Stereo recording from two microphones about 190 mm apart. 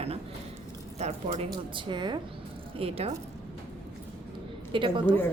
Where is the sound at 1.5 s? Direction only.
25° right (ahead or behind).